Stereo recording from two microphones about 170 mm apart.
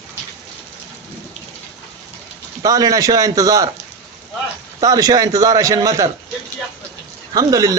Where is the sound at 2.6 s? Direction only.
20° right (ahead or behind).